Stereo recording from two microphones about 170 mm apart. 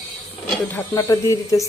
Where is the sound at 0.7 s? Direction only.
20° left (ahead or behind).